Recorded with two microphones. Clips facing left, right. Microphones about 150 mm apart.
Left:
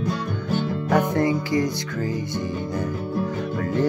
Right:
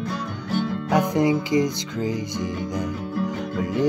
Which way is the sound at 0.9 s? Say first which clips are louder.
Right 1 dB; 15° right (ahead or behind).